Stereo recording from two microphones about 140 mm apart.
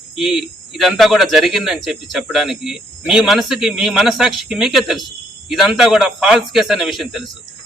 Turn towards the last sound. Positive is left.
turn(degrees=0)  # may be behind; listen again after turning